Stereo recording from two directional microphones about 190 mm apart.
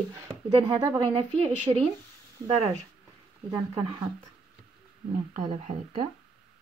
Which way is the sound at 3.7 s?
30° right (ahead or behind).